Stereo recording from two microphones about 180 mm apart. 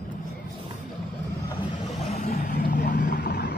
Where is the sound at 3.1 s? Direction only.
65° left (ahead or behind).